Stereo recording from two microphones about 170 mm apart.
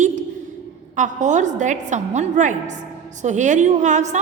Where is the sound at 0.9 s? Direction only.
45° right (ahead or behind).